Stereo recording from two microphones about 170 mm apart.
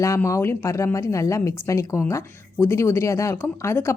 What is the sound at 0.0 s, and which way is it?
Speech, 15° left (ahead or behind).